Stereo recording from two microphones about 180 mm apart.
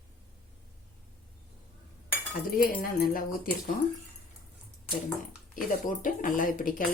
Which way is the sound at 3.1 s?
50° left (ahead or behind).